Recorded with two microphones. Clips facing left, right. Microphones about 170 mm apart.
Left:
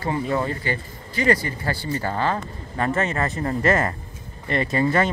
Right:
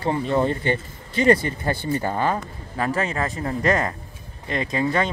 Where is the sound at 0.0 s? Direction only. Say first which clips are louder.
Right 3 dB; 25° right (ahead or behind).